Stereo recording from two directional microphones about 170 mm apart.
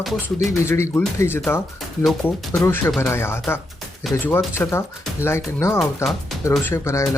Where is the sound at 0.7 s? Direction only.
15° left (ahead or behind).